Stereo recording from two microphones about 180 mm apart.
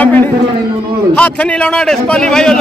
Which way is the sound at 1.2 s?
5° left (ahead or behind).